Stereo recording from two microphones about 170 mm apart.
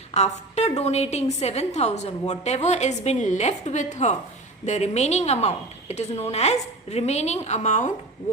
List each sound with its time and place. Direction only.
0.1 s a woman's voice: 40° left (ahead or behind)